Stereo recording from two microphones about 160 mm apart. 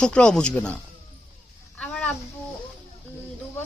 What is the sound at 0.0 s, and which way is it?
Speech, 5° left (ahead or behind).